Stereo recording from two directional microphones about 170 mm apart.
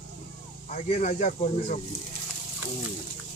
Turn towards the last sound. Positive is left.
turn(degrees=45)  # may be behind; listen again after turning